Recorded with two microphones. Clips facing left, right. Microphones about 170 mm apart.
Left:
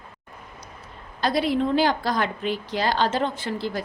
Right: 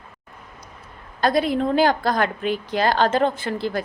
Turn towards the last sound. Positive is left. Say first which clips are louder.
# right 3 dB
turn(degrees=-55)  # may be behind; listen again after turning